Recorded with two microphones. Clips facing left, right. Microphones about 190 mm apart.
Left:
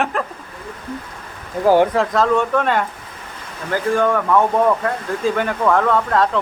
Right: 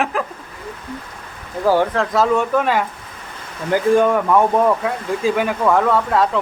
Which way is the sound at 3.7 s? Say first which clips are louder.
Right 3 dB; 15° right (ahead or behind).